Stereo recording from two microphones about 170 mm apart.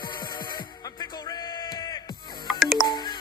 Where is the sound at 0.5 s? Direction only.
25° left (ahead or behind).